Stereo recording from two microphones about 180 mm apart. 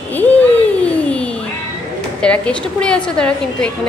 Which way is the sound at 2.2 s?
5° left (ahead or behind).